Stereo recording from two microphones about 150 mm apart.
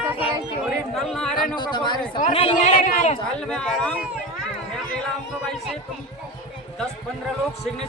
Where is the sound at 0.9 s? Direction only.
5° left (ahead or behind).